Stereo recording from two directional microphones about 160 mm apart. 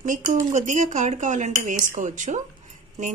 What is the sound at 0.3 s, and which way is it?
Speech, 45° right (ahead or behind).